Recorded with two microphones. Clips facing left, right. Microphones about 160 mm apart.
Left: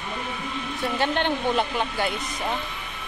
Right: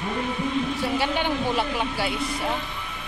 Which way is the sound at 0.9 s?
10° right (ahead or behind).